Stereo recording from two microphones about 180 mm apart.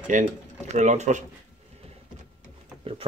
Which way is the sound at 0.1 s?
45° right (ahead or behind).